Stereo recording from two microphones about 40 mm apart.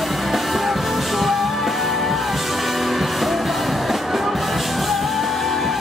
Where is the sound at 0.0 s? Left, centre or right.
Centre.